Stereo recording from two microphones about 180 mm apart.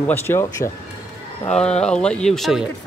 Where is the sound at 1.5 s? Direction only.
5° left (ahead or behind).